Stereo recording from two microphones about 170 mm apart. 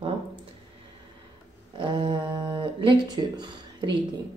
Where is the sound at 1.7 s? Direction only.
30° right (ahead or behind).